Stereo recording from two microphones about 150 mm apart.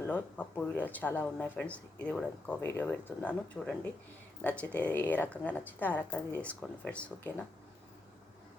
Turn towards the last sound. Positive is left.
turn(degrees=10)  # may be behind; listen again after turning